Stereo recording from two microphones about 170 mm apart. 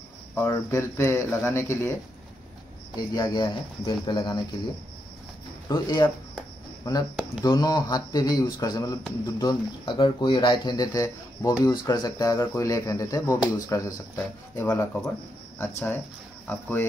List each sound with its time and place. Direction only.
0.3 s speech: 15° left (ahead or behind)
3.2 s speech: 20° left (ahead or behind)
5.7 s speech: 25° left (ahead or behind); by 16.8 s 10° left (ahead or behind)